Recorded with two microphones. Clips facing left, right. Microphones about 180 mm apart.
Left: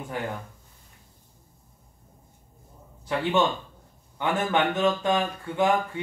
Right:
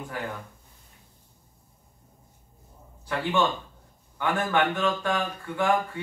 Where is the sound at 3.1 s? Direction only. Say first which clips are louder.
Left 2 dB; 20° left (ahead or behind).